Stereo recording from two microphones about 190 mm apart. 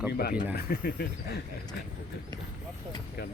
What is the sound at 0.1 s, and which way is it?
Speech, 55° left (ahead or behind).